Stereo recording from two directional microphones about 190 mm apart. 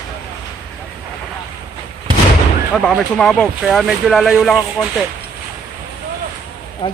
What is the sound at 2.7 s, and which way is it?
Speech, 5° left (ahead or behind).